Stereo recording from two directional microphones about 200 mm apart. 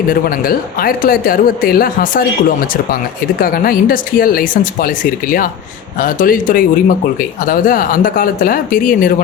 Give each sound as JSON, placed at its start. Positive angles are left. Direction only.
{"t": 0.1, "sound": "speech", "side_deg": 45}